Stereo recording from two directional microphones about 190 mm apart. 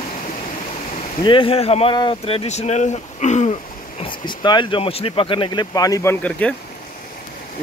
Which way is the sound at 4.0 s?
25° left (ahead or behind).